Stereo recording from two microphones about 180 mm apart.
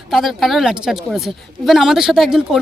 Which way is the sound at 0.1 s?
Centre (ahead or behind).